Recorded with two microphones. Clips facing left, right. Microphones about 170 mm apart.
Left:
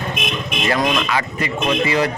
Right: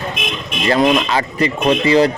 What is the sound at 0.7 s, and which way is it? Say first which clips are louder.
Speech: right 6 dB; 30° right (ahead or behind).